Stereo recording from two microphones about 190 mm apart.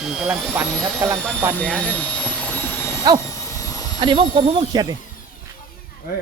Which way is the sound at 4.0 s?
25° right (ahead or behind).